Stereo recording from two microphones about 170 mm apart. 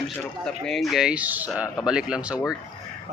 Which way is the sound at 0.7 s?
Centre (ahead or behind).